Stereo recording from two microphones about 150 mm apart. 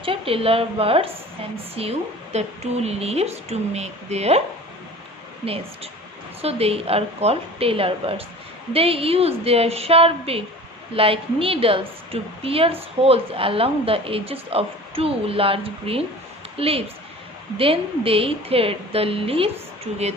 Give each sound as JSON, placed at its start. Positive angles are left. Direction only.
{"t": 0.0, "sound": "a woman's voice", "side_deg": -35}
{"t": 6.4, "sound": "a woman's voice", "side_deg": -40}